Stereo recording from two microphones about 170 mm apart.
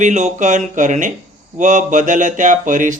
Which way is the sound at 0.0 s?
45° right (ahead or behind).